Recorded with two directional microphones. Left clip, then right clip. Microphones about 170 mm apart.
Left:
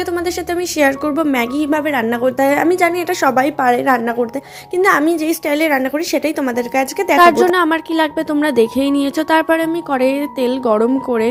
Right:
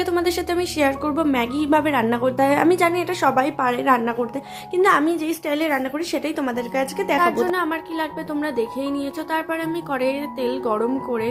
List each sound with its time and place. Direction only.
0.1 s a woman's voice: 5° left (ahead or behind)
0.8 s a woman's voice: 20° left (ahead or behind)
7.2 s a woman's voice: 55° left (ahead or behind)